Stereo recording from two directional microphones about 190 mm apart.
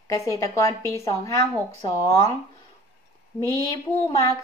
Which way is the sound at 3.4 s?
20° left (ahead or behind).